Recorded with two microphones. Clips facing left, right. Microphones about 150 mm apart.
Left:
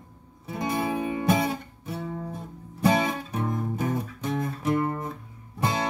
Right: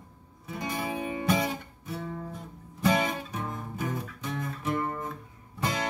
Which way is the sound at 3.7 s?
45° left (ahead or behind).